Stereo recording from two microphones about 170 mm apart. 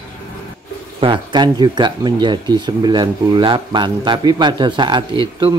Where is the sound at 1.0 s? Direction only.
30° right (ahead or behind).